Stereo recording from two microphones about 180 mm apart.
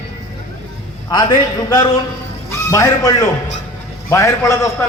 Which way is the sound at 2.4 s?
20° left (ahead or behind).